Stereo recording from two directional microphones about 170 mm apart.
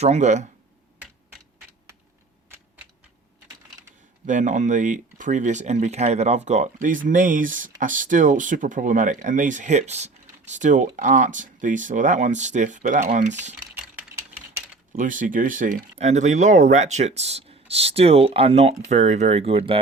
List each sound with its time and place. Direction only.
0.0 s speech: 45° right (ahead or behind)
4.3 s speech: 45° right (ahead or behind)
13.8 s typewriter: 15° right (ahead or behind)
14.9 s speech: 50° right (ahead or behind); by 19.8 s 35° right (ahead or behind)